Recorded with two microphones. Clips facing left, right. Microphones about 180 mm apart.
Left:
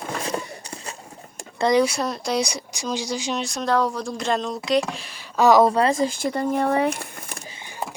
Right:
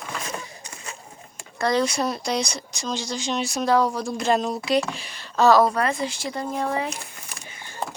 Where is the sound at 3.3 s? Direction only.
5° right (ahead or behind).